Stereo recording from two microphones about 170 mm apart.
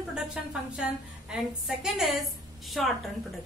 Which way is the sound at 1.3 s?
Centre (ahead or behind).